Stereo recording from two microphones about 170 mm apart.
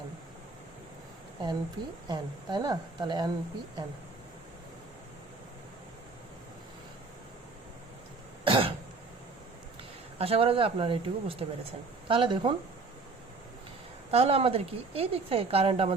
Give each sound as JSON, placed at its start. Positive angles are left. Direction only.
{"t": 2.0, "sound": "a woman's voice", "side_deg": -25}
{"t": 8.4, "sound": "cough", "side_deg": -30}
{"t": 10.2, "sound": "a woman's voice", "side_deg": -35}
{"t": 14.1, "sound": "speech", "side_deg": -35}